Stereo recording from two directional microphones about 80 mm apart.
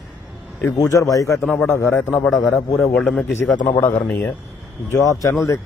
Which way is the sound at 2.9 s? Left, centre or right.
Centre.